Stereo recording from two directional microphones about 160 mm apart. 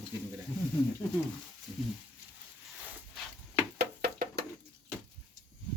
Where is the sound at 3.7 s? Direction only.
85° right.